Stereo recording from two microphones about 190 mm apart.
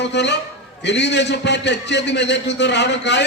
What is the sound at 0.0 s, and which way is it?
A man's voice, 65° left (ahead or behind).